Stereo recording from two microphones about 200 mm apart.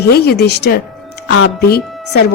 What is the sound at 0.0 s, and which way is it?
A woman's voice, 55° left (ahead or behind).